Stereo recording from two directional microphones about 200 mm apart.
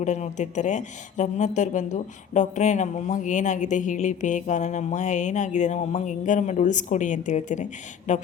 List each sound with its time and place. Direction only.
0.0 s speech: 35° left (ahead or behind)